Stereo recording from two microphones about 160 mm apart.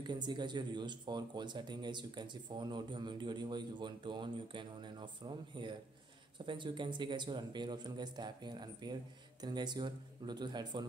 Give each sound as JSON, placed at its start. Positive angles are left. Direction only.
{"t": 0.0, "sound": "speech", "side_deg": -25}